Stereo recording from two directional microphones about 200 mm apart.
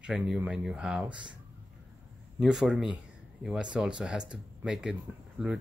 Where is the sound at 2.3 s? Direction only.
Centre (ahead or behind).